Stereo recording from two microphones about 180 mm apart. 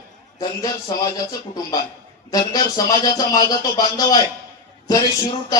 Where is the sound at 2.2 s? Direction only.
20° left (ahead or behind).